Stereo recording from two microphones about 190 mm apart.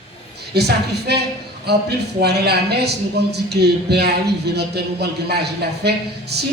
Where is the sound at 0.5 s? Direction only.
60° right (ahead or behind).